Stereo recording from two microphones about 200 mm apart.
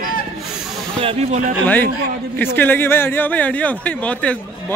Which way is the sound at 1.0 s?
30° right (ahead or behind).